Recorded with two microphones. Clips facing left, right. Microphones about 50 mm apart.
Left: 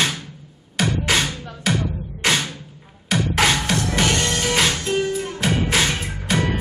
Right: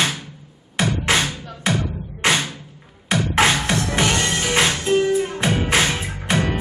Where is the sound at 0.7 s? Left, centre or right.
Centre.